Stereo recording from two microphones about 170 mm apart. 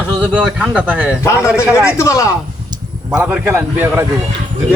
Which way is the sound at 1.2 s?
15° left (ahead or behind).